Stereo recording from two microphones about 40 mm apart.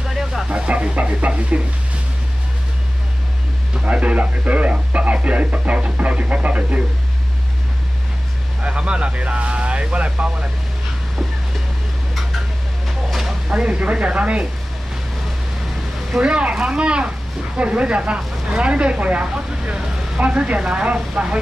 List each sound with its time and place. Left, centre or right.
0.1 s a sound: centre
0.5 s speech: right
3.8 s speech: right
8.6 s speech: right
12.8 s vehicle: centre
13.5 s speech: right
16.2 s speech: right